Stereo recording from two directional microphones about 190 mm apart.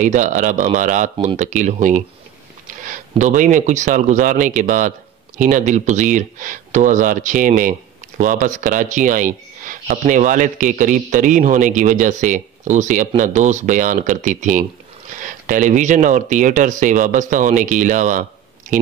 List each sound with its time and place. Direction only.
0.0 s speech: 40° right (ahead or behind)